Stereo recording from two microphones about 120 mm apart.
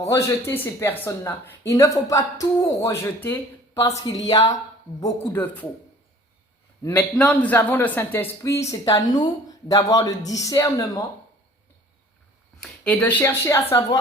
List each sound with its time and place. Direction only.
0.0 s speech: 25° left (ahead or behind)
5.3 s speech: 15° left (ahead or behind)
6.8 s speech: 15° left (ahead or behind); by 11.0 s 30° left (ahead or behind)
12.6 s speech: 10° left (ahead or behind)
13.2 s speech: 25° left (ahead or behind)